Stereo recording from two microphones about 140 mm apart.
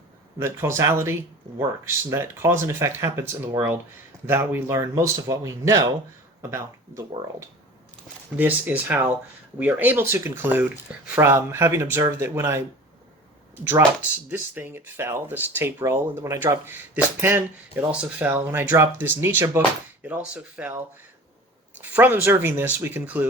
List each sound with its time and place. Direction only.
0.3 s speech: 20° right (ahead or behind)
8.4 s speech: 15° right (ahead or behind)
14.3 s speech: 15° right (ahead or behind)
21.8 s speech: 10° right (ahead or behind)